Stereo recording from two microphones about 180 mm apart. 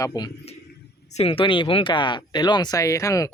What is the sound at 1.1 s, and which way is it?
A man's voice, 30° left (ahead or behind).